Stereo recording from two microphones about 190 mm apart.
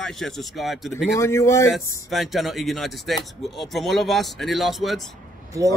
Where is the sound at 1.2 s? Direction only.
15° left (ahead or behind).